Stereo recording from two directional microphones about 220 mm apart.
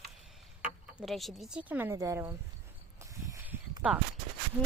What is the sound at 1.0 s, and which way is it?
Speech, centre (ahead or behind).